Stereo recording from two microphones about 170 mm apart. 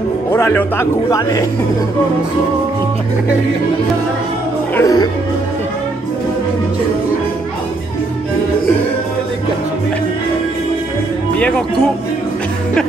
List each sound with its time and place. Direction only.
0.3 s speech: 10° left (ahead or behind)
4.7 s speech: 20° left (ahead or behind)
11.3 s speech: 5° left (ahead or behind)